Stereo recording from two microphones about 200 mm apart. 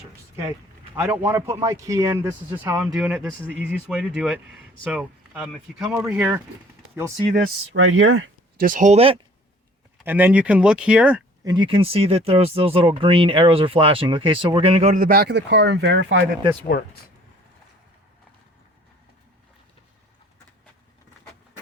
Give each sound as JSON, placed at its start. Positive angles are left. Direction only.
{"t": 0.9, "sound": "speech", "side_deg": -15}
{"t": 7.3, "sound": "speech", "side_deg": -65}
{"t": 8.6, "sound": "speech", "side_deg": -40}
{"t": 10.0, "sound": "speech", "side_deg": -10}
{"t": 11.4, "sound": "speech", "side_deg": -20}
{"t": 16.7, "sound": "speech", "side_deg": 45}